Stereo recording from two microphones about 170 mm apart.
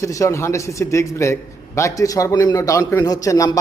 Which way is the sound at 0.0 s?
20° left (ahead or behind).